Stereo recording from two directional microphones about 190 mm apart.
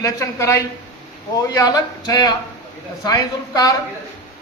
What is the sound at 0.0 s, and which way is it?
A man's voice, 15° left (ahead or behind).